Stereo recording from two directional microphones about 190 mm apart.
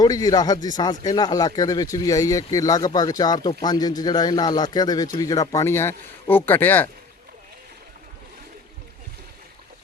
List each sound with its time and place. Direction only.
0.0 s speech: 20° left (ahead or behind)